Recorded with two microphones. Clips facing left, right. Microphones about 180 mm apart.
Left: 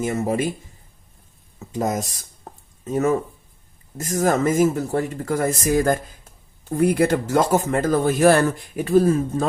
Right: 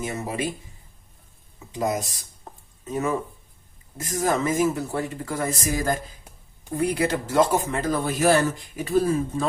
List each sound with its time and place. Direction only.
0.0 s speech: 45° left (ahead or behind)
1.5 s speech: 45° left (ahead or behind)